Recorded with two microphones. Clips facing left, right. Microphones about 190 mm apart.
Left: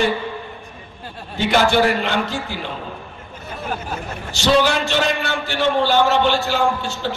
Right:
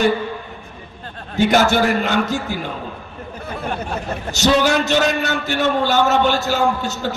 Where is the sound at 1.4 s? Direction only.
45° right (ahead or behind).